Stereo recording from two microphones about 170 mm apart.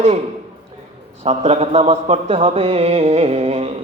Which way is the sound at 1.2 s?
40° right (ahead or behind).